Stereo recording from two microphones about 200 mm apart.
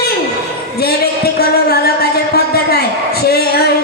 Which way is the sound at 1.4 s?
50° left (ahead or behind).